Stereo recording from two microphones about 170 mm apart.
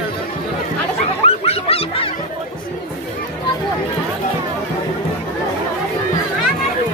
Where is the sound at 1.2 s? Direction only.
35° left (ahead or behind).